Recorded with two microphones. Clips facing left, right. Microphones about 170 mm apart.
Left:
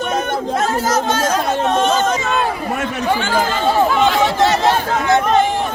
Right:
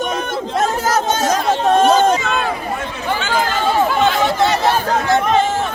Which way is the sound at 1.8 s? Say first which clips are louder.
Right 6 dB; 40° right (ahead or behind).